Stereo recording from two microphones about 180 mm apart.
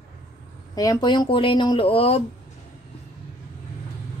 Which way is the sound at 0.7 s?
20° left (ahead or behind).